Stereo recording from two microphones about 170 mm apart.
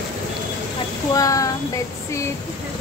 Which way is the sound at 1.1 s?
20° left (ahead or behind).